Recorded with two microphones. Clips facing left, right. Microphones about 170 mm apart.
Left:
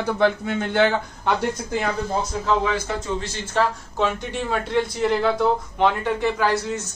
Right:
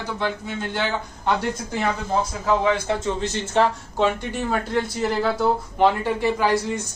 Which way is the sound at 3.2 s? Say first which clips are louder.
Right 4 dB; 20° right (ahead or behind).